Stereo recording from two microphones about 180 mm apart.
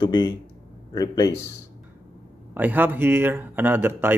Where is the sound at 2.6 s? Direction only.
10° right (ahead or behind).